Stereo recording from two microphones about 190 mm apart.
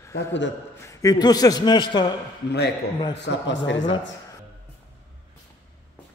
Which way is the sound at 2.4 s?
60° left (ahead or behind).